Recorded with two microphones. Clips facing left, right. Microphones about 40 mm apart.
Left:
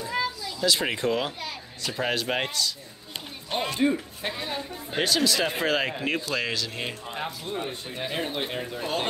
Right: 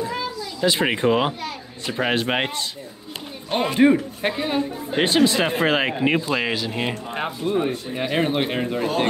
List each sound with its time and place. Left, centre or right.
0.6 s speech: right